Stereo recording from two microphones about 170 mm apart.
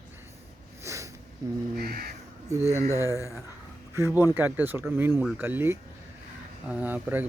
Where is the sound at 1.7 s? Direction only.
65° right (ahead or behind).